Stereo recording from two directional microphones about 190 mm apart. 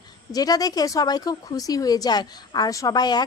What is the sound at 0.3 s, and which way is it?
Speech, 20° left (ahead or behind).